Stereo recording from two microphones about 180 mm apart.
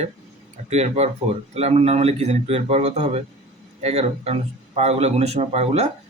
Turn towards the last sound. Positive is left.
turn(degrees=-35)  # may be behind; listen again after turning